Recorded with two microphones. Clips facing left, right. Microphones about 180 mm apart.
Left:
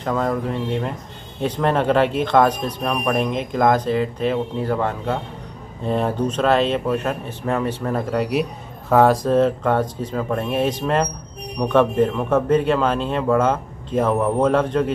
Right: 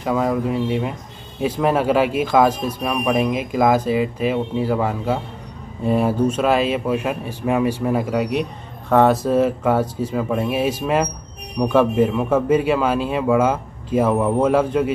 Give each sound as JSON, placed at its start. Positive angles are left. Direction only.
{"t": 0.0, "sound": "speech", "side_deg": -5}